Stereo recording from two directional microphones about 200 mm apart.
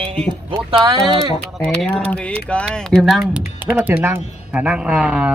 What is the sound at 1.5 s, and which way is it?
Speech, 5° left (ahead or behind).